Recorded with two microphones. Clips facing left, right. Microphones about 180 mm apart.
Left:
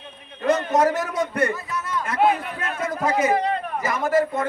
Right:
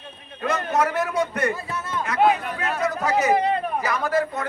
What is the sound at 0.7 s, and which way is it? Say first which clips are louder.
Speech: left 2 dB; 40° left (ahead or behind).